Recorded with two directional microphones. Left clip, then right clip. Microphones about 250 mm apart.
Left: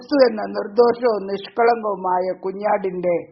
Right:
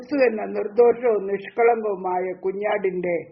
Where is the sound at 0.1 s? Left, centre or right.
Left.